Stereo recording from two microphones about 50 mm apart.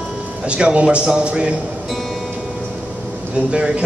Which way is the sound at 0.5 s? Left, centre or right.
Right.